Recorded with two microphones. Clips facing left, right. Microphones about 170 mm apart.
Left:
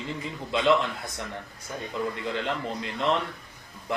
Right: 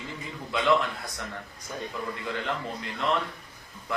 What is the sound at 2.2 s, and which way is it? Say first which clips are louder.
Speech: left 2 dB; 20° left (ahead or behind).